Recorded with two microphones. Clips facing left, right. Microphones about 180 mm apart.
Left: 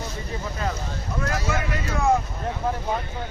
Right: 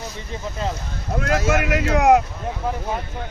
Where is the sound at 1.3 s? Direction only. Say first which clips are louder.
Right 9 dB; 75° right (ahead or behind).